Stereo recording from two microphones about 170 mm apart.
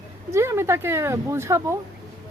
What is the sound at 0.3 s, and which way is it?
Speech, 15° right (ahead or behind).